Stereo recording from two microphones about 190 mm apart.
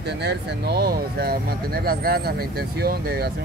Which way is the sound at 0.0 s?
60° right (ahead or behind).